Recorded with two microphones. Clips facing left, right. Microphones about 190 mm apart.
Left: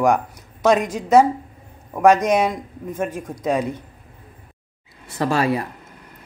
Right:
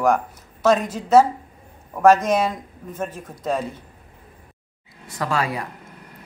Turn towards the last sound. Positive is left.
turn(degrees=30)  # may be behind; listen again after turning